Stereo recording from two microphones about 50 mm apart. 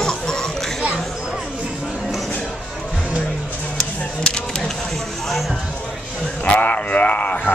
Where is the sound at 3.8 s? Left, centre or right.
Centre.